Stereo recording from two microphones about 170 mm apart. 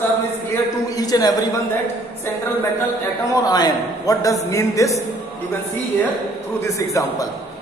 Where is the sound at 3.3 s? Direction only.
25° left (ahead or behind).